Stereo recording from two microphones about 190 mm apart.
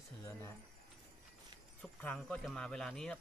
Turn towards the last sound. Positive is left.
turn(degrees=5)  # may be behind; listen again after turning